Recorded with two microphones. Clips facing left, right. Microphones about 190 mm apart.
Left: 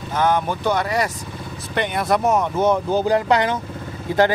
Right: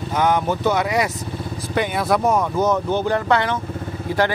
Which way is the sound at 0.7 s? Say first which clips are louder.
Right 1 dB; 10° right (ahead or behind).